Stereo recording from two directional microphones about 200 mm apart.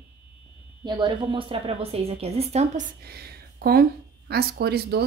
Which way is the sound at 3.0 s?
50° right (ahead or behind).